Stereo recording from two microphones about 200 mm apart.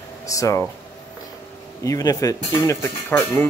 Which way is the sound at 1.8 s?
15° left (ahead or behind).